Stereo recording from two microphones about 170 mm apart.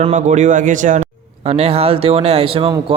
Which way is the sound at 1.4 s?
35° right (ahead or behind).